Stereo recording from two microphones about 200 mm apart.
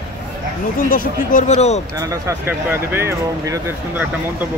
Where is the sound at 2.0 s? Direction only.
15° right (ahead or behind).